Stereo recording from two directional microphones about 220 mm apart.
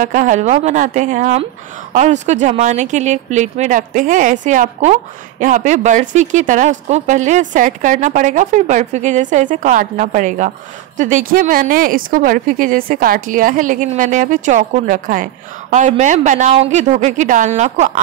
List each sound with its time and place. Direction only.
0.0 s speech: 35° right (ahead or behind)